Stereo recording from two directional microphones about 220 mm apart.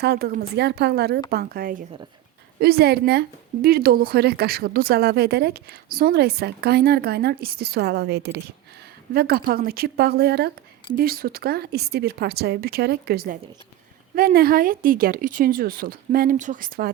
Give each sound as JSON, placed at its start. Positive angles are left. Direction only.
{"t": 0.0, "sound": "speech", "side_deg": -45}